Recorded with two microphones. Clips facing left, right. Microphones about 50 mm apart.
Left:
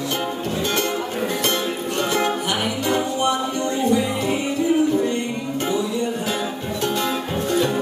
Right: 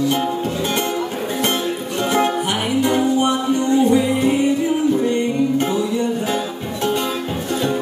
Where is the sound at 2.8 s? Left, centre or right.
Centre.